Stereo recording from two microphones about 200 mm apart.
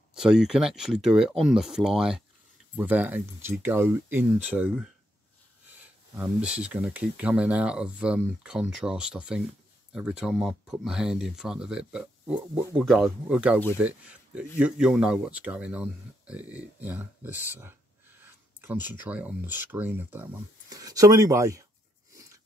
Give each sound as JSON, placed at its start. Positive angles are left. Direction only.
{"t": 0.1, "sound": "speech", "side_deg": -5}
{"t": 6.1, "sound": "speech", "side_deg": -5}
{"t": 22.1, "sound": "a sound", "side_deg": -15}